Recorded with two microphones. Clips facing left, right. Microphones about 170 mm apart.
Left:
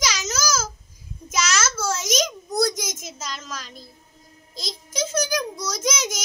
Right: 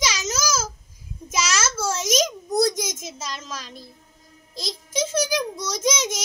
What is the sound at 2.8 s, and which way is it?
A child's voice, centre (ahead or behind).